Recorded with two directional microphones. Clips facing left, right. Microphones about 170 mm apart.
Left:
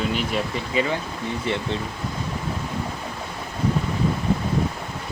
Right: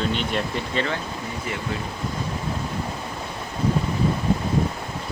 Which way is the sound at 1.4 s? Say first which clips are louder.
Left 4 dB; 30° left (ahead or behind).